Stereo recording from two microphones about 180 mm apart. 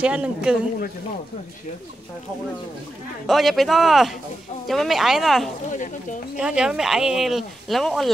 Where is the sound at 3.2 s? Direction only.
Centre (ahead or behind).